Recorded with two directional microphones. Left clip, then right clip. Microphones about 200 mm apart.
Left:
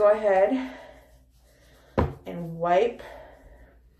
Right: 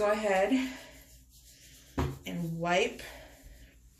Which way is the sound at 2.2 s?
15° right (ahead or behind).